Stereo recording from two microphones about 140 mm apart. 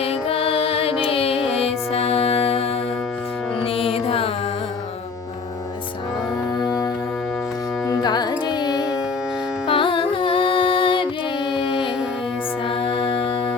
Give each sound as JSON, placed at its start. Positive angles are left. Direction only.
{"t": 0.0, "sound": "music", "side_deg": 45}
{"t": 7.9, "sound": "carnatic music", "side_deg": 30}
{"t": 9.6, "sound": "music", "side_deg": 40}